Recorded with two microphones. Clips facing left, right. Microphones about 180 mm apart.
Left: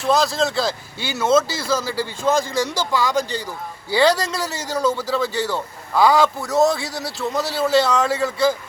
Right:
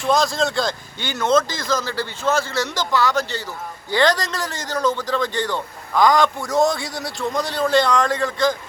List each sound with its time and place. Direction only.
0.0 s a man's voice: centre (ahead or behind)